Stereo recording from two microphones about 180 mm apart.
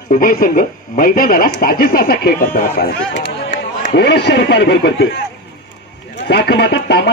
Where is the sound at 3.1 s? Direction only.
75° left (ahead or behind).